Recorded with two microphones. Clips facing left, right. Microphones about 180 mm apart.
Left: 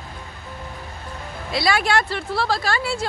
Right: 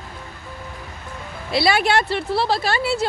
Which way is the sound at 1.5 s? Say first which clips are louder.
Right 2 dB; 25° right (ahead or behind).